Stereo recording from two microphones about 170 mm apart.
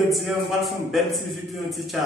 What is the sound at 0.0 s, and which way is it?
A man's voice, centre (ahead or behind).